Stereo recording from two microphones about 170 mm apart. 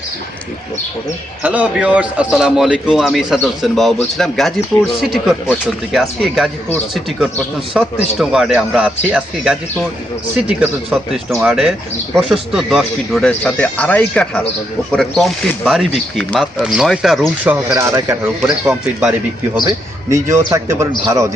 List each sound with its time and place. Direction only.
1.4 s speech: 10° right (ahead or behind)
7.8 s speech: centre (ahead or behind)
17.5 s speech: 15° right (ahead or behind)
18.7 s speech: 5° right (ahead or behind)
20.1 s speech: 15° right (ahead or behind)